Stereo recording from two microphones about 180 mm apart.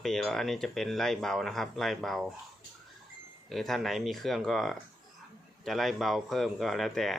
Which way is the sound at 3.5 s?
Centre (ahead or behind).